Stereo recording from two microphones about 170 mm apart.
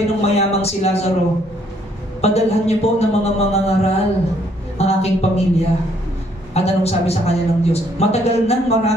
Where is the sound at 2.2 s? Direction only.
40° left (ahead or behind).